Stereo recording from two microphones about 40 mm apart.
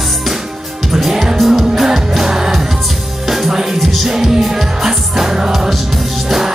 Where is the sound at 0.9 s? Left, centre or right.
Centre.